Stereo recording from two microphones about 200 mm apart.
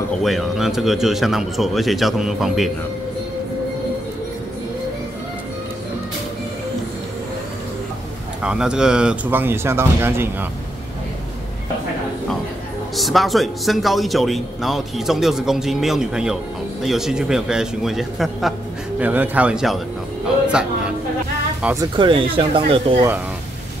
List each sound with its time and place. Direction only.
0.2 s a man's voice: centre (ahead or behind)
8.4 s speech: 5° right (ahead or behind)
12.9 s a man's voice: centre (ahead or behind)
21.9 s speech: 25° right (ahead or behind)